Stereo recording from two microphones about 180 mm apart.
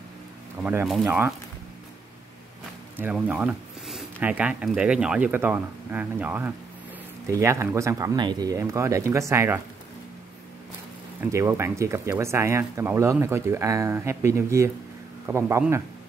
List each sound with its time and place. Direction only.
0.8 s speech: 5° right (ahead or behind)
3.0 s speech: 10° right (ahead or behind)
11.3 s speech: 15° right (ahead or behind)